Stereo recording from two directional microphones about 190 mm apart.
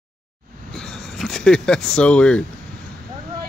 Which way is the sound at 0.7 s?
Centre (ahead or behind).